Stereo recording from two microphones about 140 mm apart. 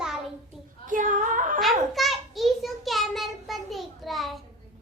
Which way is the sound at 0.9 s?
70° right (ahead or behind).